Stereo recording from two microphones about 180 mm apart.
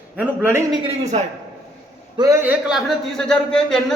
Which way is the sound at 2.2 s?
20° right (ahead or behind).